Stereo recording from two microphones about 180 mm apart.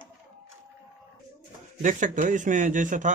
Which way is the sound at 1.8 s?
45° right (ahead or behind).